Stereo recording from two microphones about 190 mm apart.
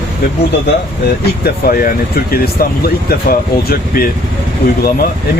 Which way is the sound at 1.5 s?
50° left (ahead or behind).